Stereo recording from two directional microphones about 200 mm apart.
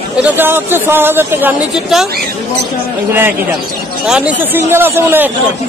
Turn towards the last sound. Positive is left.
turn(degrees=-10)  # may be behind; listen again after turning